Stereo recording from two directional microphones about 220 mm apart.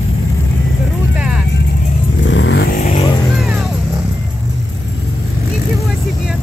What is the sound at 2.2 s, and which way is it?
Vehicle, 60° left (ahead or behind).